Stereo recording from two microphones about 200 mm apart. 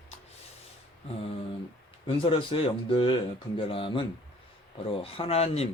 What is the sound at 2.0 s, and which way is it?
Speech, 25° left (ahead or behind).